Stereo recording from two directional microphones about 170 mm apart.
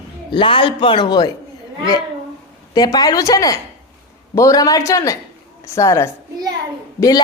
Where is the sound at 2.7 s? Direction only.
25° left (ahead or behind).